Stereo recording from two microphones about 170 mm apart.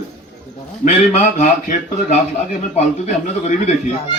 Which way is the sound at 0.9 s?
45° left (ahead or behind).